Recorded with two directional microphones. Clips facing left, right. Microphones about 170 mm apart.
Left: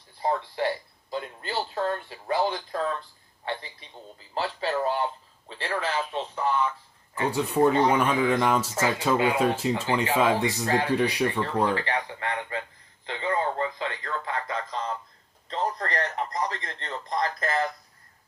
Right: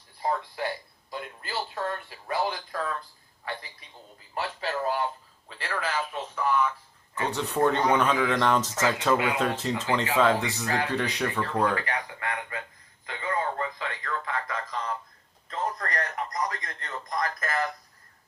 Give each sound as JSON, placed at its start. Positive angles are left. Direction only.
{"t": 0.2, "sound": "speech", "side_deg": 25}
{"t": 7.3, "sound": "speech", "side_deg": 10}
{"t": 9.1, "sound": "speech", "side_deg": 30}
{"t": 9.4, "sound": "speech", "side_deg": 10}
{"t": 10.7, "sound": "speech", "side_deg": 30}
{"t": 10.9, "sound": "speech", "side_deg": 10}
{"t": 11.3, "sound": "a man's voice", "side_deg": 30}